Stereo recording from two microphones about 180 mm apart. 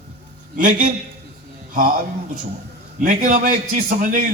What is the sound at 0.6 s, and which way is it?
Speech, 45° right (ahead or behind).